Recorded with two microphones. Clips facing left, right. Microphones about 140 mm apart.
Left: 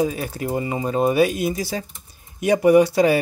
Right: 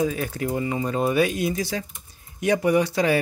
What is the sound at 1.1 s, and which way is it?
Speech, 5° left (ahead or behind).